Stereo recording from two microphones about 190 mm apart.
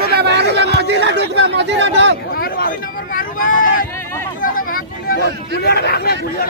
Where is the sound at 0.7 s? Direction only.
65° right (ahead or behind).